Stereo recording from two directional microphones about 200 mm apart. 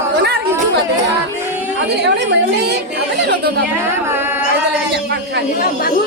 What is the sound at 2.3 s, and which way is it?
Speech, 55° right (ahead or behind).